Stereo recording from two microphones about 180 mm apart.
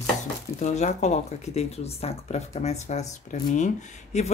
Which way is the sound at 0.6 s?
40° left (ahead or behind).